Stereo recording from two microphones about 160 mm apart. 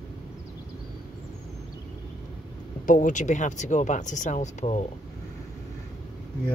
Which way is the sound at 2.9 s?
55° left (ahead or behind).